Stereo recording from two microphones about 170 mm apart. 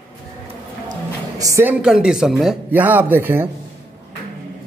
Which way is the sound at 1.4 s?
15° right (ahead or behind).